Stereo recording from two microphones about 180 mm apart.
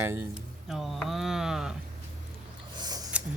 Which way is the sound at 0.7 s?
Centre (ahead or behind).